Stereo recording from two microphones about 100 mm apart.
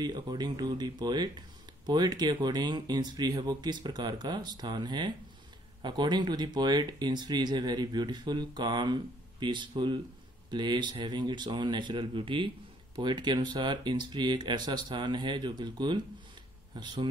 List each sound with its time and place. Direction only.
0.0 s speech: 45° right (ahead or behind)